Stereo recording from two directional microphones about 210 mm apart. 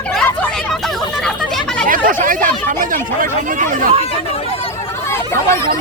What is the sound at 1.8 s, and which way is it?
Chatter, 40° right (ahead or behind).